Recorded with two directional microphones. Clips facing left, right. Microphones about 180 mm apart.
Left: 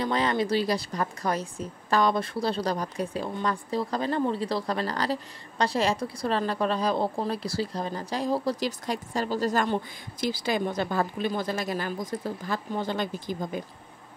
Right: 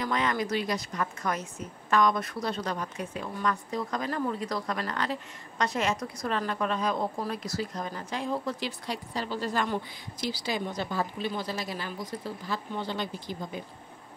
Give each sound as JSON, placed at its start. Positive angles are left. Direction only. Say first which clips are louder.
{"t": 0.0, "sound": "a woman's voice", "louder": "left 3 dB", "side_deg": 30}